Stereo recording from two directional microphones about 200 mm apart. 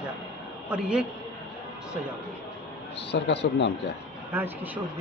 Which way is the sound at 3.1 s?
60° left (ahead or behind).